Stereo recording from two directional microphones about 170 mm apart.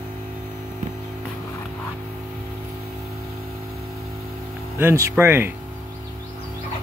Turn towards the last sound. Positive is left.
turn(degrees=-10)  # may be behind; listen again after turning